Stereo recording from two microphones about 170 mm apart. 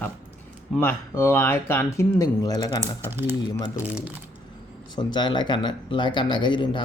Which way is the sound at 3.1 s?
15° right (ahead or behind).